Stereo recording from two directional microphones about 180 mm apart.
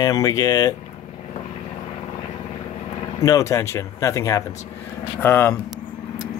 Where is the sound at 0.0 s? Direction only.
20° left (ahead or behind).